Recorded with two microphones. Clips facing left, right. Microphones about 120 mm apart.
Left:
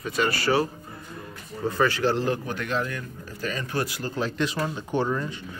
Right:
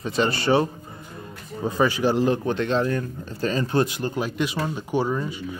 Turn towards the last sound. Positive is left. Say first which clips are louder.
# right 2 dB
turn(degrees=-10)  # may be behind; listen again after turning